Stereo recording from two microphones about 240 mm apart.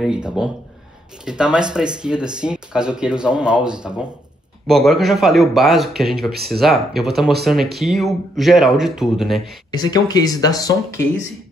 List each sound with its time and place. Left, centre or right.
0.0 s speech: centre
9.7 s speech: centre